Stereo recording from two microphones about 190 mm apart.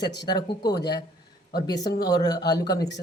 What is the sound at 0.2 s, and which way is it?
A woman's voice, 20° left (ahead or behind).